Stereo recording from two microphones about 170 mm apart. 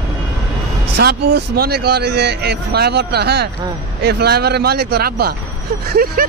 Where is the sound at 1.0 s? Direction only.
70° right (ahead or behind).